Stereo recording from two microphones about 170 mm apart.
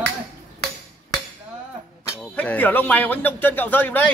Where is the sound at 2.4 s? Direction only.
10° left (ahead or behind).